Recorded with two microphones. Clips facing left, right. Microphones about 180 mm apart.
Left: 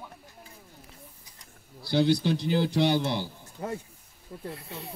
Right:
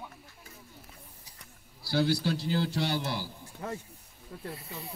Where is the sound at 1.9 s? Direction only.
20° left (ahead or behind).